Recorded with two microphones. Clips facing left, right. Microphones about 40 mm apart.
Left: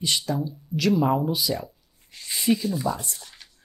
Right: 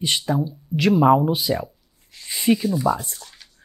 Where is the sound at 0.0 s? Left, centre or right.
Right.